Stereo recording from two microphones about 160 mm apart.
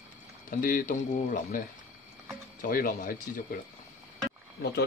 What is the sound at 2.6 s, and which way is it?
Speech, 60° left (ahead or behind).